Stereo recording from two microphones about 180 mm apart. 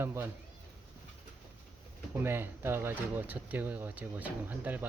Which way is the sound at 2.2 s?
15° right (ahead or behind).